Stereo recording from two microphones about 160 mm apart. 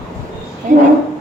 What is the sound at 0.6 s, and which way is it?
Speech, 55° right (ahead or behind).